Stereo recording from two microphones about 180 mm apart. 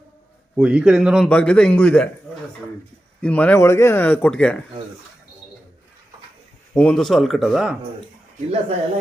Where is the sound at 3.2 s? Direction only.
10° left (ahead or behind).